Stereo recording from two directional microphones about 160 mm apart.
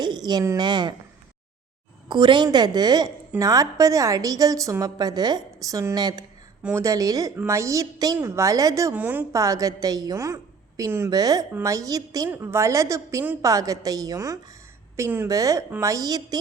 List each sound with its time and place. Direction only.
0.0 s a woman's voice: 25° right (ahead or behind)
2.0 s a woman's voice: 30° right (ahead or behind)
6.6 s a woman's voice: 10° right (ahead or behind)